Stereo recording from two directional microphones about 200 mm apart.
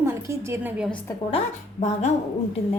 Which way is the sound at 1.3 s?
30° left (ahead or behind).